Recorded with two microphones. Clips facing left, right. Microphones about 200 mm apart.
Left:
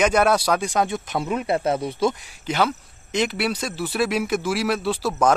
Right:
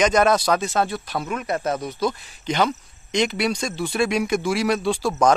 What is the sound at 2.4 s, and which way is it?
Speech, 5° left (ahead or behind).